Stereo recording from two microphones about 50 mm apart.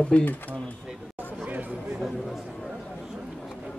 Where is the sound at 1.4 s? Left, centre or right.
Right.